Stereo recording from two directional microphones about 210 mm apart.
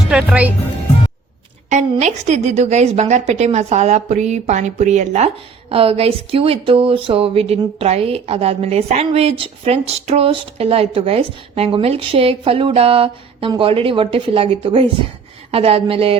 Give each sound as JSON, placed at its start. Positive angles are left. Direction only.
{"t": 0.1, "sound": "speech", "side_deg": -5}
{"t": 1.7, "sound": "a woman's voice", "side_deg": -35}